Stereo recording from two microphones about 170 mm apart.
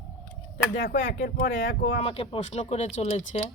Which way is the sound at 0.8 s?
90° left.